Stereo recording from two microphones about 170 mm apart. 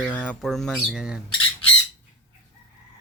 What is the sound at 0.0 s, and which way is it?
Speech, 10° left (ahead or behind).